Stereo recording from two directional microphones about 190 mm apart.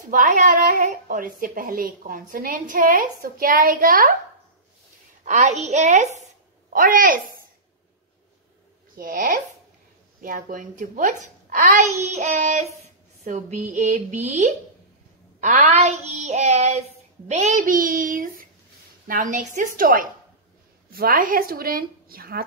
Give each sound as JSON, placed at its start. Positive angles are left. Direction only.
{"t": 0.1, "sound": "speech", "side_deg": -45}
{"t": 5.2, "sound": "a child's voice", "side_deg": -40}
{"t": 8.9, "sound": "a child's voice", "side_deg": -45}